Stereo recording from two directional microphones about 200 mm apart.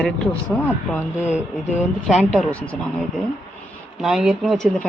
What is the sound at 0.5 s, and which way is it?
Speech, 10° left (ahead or behind).